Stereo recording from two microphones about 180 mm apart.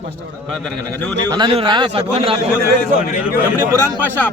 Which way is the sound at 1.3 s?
30° right (ahead or behind).